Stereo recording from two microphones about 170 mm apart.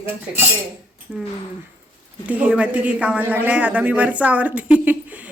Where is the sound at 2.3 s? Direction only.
5° right (ahead or behind).